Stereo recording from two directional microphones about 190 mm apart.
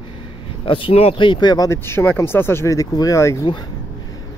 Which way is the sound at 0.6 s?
30° left (ahead or behind).